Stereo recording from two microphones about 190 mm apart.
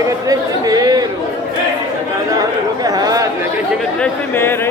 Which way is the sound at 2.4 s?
20° right (ahead or behind).